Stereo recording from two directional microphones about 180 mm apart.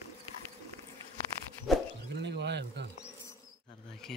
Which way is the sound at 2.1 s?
70° right (ahead or behind).